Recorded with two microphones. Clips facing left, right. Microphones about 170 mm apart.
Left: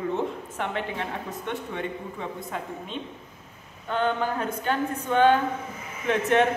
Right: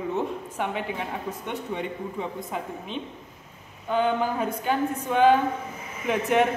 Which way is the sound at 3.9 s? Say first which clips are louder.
Right 2 dB; 10° right (ahead or behind).